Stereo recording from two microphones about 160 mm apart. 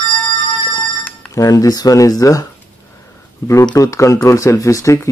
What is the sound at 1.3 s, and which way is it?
Speech, 20° left (ahead or behind).